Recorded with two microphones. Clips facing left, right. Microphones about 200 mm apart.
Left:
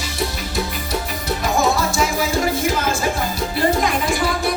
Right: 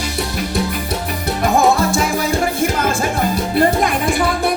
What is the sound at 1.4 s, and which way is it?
Music, 55° right (ahead or behind).